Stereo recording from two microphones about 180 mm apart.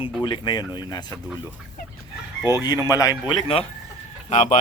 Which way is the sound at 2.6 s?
20° left (ahead or behind).